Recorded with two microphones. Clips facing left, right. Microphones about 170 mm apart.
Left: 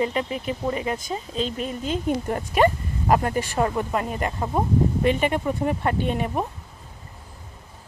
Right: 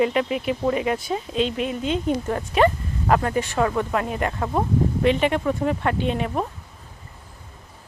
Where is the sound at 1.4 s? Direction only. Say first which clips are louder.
Right 4 dB; 40° left (ahead or behind).